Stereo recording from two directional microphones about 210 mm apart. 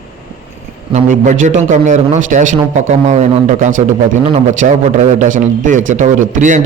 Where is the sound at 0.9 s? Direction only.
35° right (ahead or behind).